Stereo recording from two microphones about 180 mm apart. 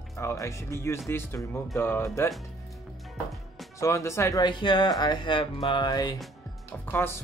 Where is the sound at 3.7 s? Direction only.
15° left (ahead or behind).